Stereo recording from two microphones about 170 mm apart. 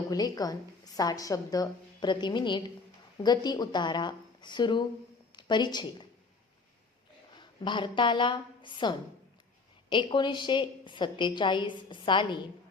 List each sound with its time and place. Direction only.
0.1 s a woman's voice: 20° left (ahead or behind)
7.3 s a woman's voice: 30° left (ahead or behind)